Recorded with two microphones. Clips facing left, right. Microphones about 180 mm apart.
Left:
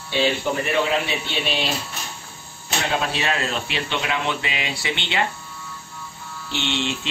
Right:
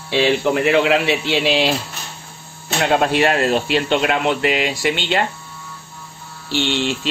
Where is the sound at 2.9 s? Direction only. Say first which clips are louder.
Right 9 dB; 55° right (ahead or behind).